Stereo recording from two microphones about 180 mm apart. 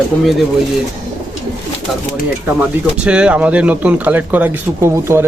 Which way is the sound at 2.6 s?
5° right (ahead or behind).